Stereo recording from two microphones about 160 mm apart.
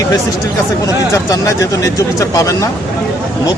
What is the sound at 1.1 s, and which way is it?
Speech, 20° left (ahead or behind).